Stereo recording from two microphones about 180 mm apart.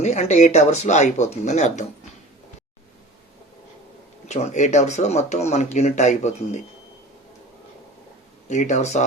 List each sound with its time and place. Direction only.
0.0 s speech: 40° left (ahead or behind)
4.3 s speech: 40° left (ahead or behind)
8.4 s speech: 40° left (ahead or behind)